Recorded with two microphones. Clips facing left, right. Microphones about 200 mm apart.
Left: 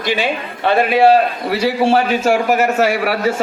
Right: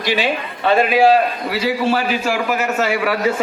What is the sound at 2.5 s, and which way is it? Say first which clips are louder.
Speech: left 4 dB; 55° left (ahead or behind).